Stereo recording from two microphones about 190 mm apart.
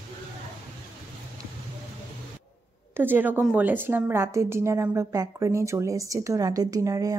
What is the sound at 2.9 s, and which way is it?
A woman's voice, 10° right (ahead or behind).